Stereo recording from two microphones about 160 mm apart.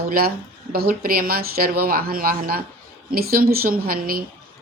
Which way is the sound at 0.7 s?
70° right (ahead or behind).